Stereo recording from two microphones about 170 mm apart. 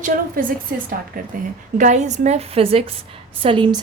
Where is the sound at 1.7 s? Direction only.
45° right (ahead or behind); by 3.8 s 30° right (ahead or behind).